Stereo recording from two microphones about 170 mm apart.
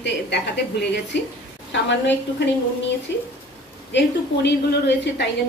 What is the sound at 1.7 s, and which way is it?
Speech, 90° left.